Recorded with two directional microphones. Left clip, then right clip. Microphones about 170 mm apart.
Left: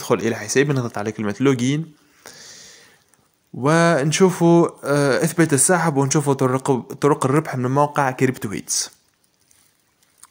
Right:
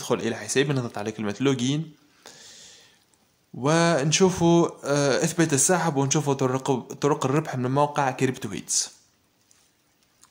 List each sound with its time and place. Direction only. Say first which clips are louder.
0.0 s speech: left 6 dB; 20° left (ahead or behind)
2.2 s a sound: left 5 dB; 20° left (ahead or behind)
3.5 s speech: left 5 dB; 20° left (ahead or behind)